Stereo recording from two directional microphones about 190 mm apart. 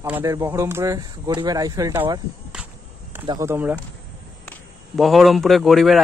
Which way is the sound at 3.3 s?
15° right (ahead or behind).